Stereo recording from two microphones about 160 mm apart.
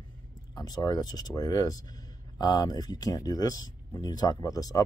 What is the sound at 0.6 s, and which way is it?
Speech, 25° left (ahead or behind).